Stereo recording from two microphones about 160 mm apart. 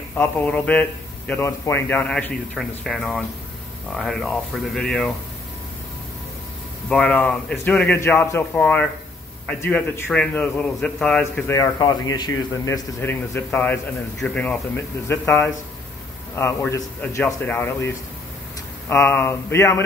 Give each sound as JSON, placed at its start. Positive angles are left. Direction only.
{"t": 0.1, "sound": "a man's voice", "side_deg": 10}
{"t": 6.9, "sound": "a man's voice", "side_deg": 5}